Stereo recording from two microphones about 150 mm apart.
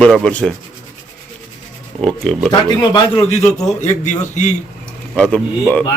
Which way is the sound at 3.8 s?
50° left (ahead or behind).